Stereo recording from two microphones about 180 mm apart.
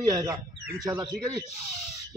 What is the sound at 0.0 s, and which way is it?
A man's voice, 20° right (ahead or behind).